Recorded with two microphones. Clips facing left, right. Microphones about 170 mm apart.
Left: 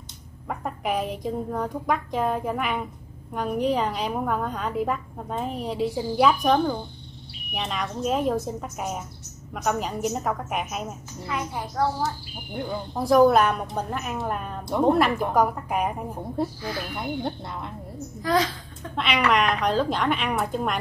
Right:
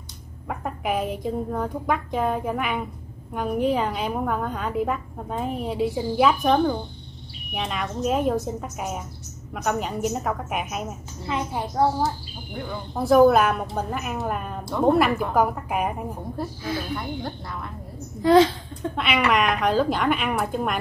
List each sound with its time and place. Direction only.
0.5 s a woman's voice: centre (ahead or behind)
11.2 s a child's voice: 25° right (ahead or behind)
12.9 s a woman's voice: centre (ahead or behind)
16.9 s a woman's voice: 25° left (ahead or behind)
18.2 s a sound: 25° right (ahead or behind)
18.9 s a woman's voice: centre (ahead or behind)